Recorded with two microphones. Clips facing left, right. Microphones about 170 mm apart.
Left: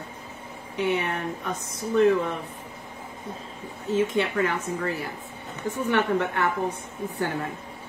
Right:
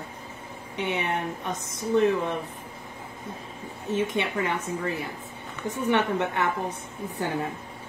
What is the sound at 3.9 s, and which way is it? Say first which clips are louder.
A woman's voice: left 3 dB; 20° right (ahead or behind).